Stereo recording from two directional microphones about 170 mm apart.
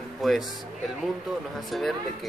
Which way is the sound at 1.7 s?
Centre (ahead or behind).